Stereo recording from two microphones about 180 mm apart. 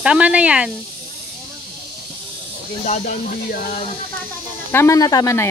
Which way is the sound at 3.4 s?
55° left (ahead or behind).